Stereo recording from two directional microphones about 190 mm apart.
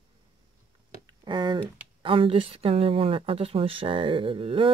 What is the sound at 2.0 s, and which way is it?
Speech, 30° right (ahead or behind).